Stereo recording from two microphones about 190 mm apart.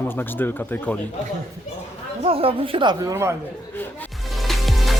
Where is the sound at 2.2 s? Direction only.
30° right (ahead or behind); by 3.4 s 15° right (ahead or behind).